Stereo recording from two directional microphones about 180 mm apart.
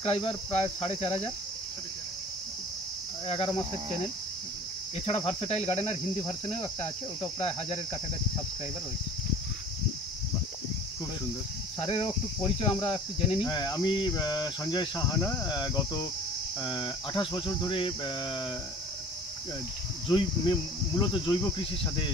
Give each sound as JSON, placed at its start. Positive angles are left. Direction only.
{"t": 0.0, "sound": "cricket", "side_deg": 30}
{"t": 3.3, "sound": "cricket", "side_deg": 30}
{"t": 5.0, "sound": "cricket", "side_deg": 35}
{"t": 11.8, "sound": "cricket", "side_deg": 30}
{"t": 20.1, "sound": "cricket", "side_deg": 25}